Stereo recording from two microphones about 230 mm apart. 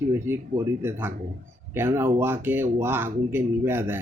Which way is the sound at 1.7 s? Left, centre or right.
Centre.